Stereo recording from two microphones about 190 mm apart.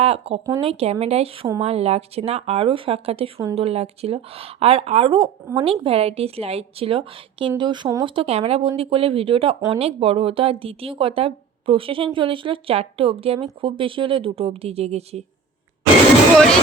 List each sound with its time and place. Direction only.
0.0 s speech: 30° right (ahead or behind)
0.4 s speech: 20° right (ahead or behind)
0.7 s speech: 30° right (ahead or behind)